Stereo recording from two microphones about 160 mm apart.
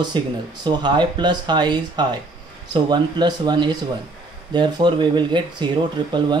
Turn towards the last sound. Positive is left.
turn(degrees=-30)  # may be behind; listen again after turning